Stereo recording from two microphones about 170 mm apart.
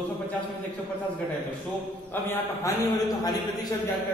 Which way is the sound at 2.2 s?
20° left (ahead or behind).